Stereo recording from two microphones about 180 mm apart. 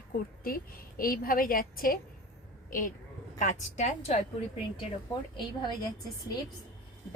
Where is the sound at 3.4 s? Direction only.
40° left (ahead or behind).